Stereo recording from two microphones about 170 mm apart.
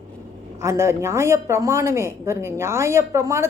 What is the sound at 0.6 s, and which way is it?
Speech, 15° right (ahead or behind).